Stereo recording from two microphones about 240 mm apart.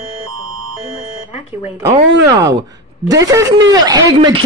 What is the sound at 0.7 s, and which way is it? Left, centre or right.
Speech, left.